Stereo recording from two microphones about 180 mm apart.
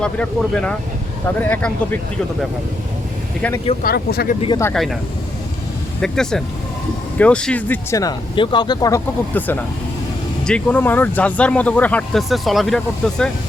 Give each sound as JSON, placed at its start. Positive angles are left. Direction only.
{"t": 0.0, "sound": "speech", "side_deg": 5}
{"t": 3.8, "sound": "speech", "side_deg": 60}
{"t": 4.4, "sound": "speech", "side_deg": 25}
{"t": 4.7, "sound": "speech", "side_deg": 0}
{"t": 6.0, "sound": "speech", "side_deg": 5}